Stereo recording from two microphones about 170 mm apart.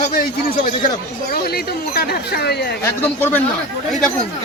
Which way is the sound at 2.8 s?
10° left (ahead or behind).